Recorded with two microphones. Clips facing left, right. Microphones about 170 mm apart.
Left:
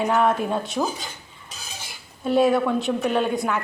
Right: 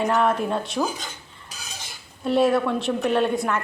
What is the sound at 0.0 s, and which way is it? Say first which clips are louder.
Speech: left 1 dB; centre (ahead or behind).